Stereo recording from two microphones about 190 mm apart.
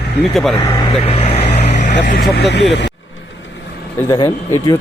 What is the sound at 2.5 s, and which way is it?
Speech, 65° left (ahead or behind).